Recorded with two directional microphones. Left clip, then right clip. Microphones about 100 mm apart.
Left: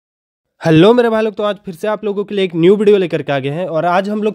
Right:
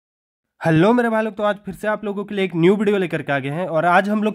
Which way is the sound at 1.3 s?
30° left (ahead or behind).